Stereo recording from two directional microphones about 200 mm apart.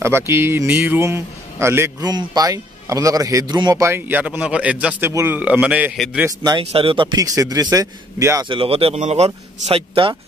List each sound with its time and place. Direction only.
0.0 s a man's voice: 10° right (ahead or behind)
6.6 s speech: 30° right (ahead or behind)
8.5 s speech: 25° right (ahead or behind)